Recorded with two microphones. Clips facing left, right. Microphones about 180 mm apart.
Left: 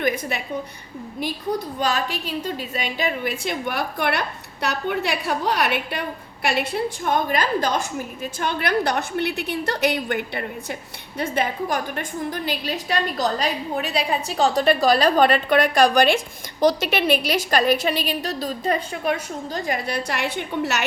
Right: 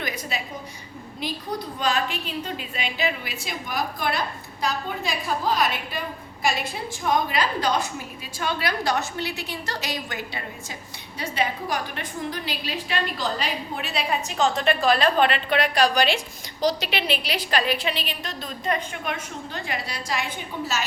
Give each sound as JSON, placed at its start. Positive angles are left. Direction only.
{"t": 0.0, "sound": "a woman's voice", "side_deg": 55}
{"t": 1.8, "sound": "a woman's voice", "side_deg": 40}
{"t": 19.9, "sound": "a woman's voice", "side_deg": 65}